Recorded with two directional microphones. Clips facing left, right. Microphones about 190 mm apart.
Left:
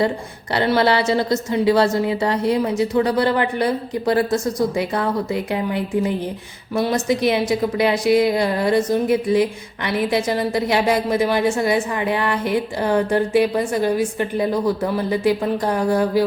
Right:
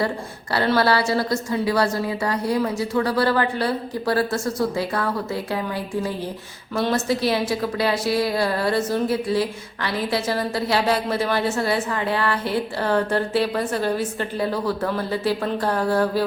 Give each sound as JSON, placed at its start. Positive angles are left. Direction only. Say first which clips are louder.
{"t": 0.5, "sound": "a woman's voice", "louder": "left 2 dB", "side_deg": 20}